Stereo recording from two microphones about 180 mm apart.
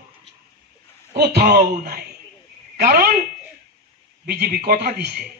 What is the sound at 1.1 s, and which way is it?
A man's voice, 65° right (ahead or behind).